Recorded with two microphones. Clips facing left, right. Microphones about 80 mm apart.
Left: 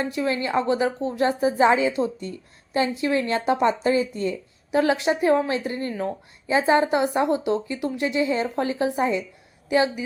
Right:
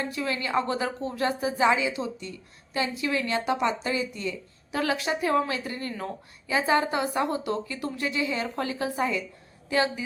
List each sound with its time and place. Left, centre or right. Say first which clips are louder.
0.0 s a woman's voice: left 5 dB; left